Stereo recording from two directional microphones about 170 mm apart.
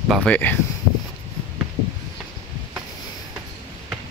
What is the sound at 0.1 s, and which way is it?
Speech, 5° left (ahead or behind).